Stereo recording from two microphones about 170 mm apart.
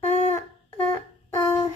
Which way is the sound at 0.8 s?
15° left (ahead or behind).